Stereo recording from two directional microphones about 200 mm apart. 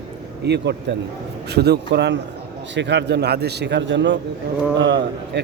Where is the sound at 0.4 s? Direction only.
55° right (ahead or behind).